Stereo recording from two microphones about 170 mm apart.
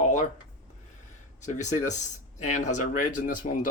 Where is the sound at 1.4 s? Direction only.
45° left (ahead or behind).